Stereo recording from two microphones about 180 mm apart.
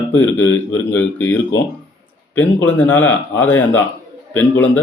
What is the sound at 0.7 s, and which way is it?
Speech, 10° left (ahead or behind).